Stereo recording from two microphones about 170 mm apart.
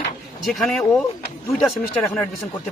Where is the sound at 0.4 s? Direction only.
5° left (ahead or behind).